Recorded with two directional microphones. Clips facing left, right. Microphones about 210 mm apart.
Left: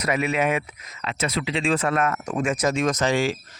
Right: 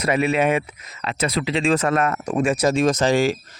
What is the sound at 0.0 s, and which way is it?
Speech, 30° right (ahead or behind).